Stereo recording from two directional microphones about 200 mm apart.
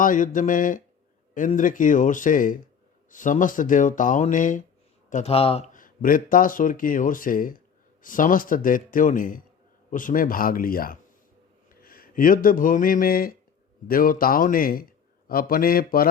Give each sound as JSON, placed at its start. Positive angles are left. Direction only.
{"t": 0.0, "sound": "speech", "side_deg": 40}